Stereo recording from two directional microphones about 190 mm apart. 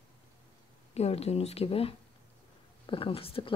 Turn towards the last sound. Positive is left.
turn(degrees=30)  # may be behind; listen again after turning